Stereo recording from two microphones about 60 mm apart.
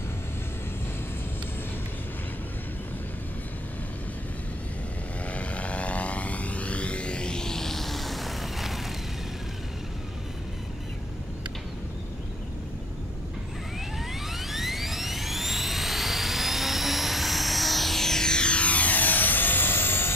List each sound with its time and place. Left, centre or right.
5.3 s vehicle: left; by 8.8 s centre
14.3 s music: centre; by 20.1 s left